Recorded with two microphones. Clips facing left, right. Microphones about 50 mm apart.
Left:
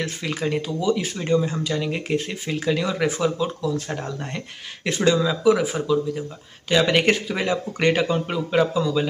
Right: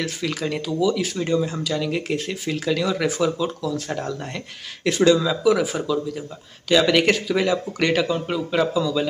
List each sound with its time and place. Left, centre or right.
0.0 s speech: left
6.9 s a man's voice: left
8.5 s speech: left